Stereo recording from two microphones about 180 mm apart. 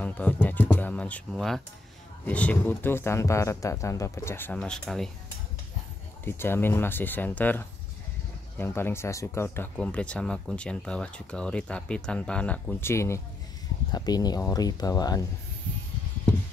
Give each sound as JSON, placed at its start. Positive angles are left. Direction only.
{"t": 0.0, "sound": "speech", "side_deg": 10}
{"t": 6.2, "sound": "speech", "side_deg": 10}